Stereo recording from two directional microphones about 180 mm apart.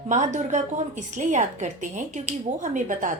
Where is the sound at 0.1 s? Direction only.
40° right (ahead or behind).